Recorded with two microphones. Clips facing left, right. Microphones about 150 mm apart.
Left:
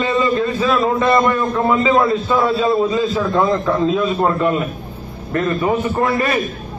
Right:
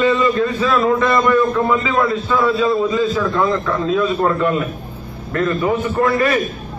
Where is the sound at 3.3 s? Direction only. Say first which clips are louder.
Left 2 dB; 25° left (ahead or behind).